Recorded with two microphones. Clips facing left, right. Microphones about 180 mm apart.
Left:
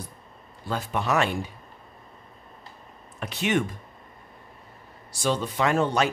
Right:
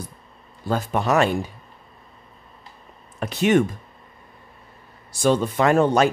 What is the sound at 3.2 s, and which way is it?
Speech, 40° right (ahead or behind).